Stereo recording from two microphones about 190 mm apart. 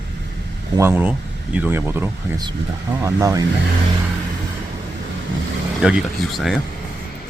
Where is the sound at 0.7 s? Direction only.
10° right (ahead or behind).